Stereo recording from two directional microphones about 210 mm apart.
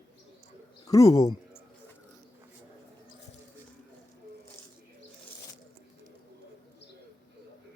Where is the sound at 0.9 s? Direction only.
15° left (ahead or behind).